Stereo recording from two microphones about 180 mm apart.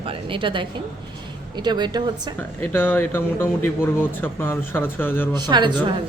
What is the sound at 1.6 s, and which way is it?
Speech, 25° right (ahead or behind).